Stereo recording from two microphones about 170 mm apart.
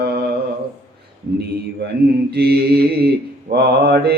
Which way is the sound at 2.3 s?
70° right (ahead or behind).